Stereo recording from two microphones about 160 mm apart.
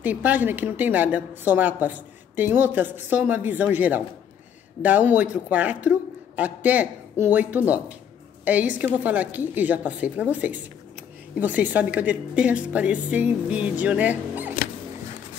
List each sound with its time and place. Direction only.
0.0 s a woman's voice: 10° right (ahead or behind)